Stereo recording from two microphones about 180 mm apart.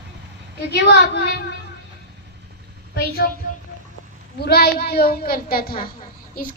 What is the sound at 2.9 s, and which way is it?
Speech, 60° left (ahead or behind).